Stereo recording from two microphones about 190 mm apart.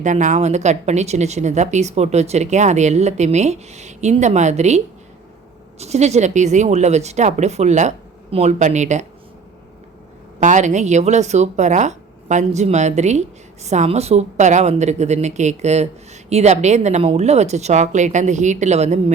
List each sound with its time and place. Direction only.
0.0 s speech: 40° right (ahead or behind)
5.8 s speech: 35° right (ahead or behind)
10.4 s speech: 40° right (ahead or behind)